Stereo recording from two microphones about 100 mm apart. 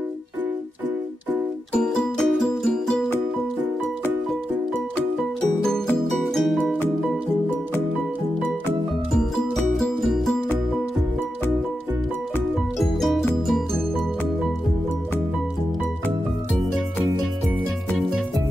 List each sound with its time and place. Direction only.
1.7 s music: 5° left (ahead or behind)
6.3 s music: centre (ahead or behind)
9.1 s music: centre (ahead or behind)
12.7 s music: centre (ahead or behind)